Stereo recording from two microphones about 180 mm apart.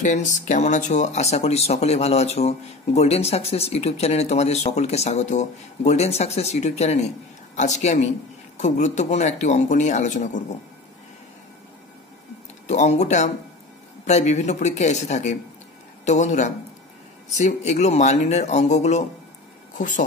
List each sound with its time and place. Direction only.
0.0 s speech: 45° left (ahead or behind)
12.6 s speech: 40° left (ahead or behind)